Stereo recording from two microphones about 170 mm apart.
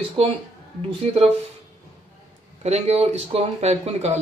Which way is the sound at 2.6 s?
40° right (ahead or behind).